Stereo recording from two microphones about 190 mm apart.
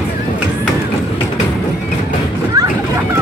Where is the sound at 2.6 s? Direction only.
20° right (ahead or behind).